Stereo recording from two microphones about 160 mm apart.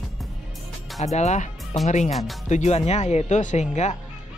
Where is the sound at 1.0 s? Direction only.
45° left (ahead or behind).